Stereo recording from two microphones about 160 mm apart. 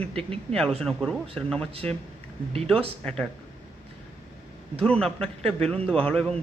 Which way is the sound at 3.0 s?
5° left (ahead or behind).